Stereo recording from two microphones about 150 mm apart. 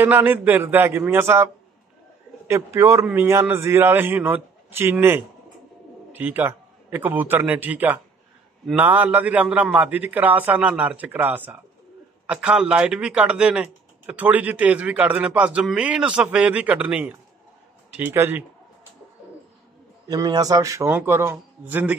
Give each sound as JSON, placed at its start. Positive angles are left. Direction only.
{"t": 0.0, "sound": "a man's voice", "side_deg": -10}
{"t": 20.1, "sound": "a man's voice", "side_deg": -25}